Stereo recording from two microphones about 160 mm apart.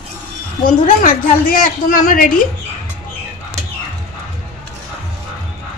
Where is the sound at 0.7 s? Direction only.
55° left (ahead or behind).